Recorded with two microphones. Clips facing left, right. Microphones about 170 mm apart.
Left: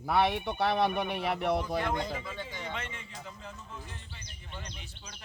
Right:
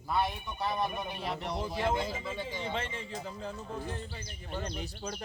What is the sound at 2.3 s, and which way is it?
Speech, 10° right (ahead or behind).